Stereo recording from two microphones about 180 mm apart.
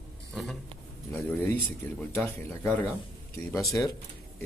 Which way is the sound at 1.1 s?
10° left (ahead or behind).